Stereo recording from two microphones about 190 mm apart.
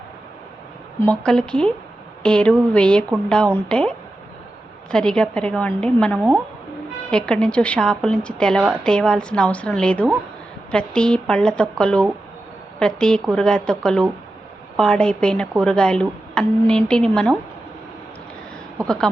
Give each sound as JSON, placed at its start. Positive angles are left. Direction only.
{"t": 0.9, "sound": "speech", "side_deg": 10}